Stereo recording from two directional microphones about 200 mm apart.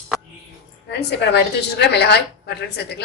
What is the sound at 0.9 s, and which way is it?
A woman's voice, 55° left (ahead or behind).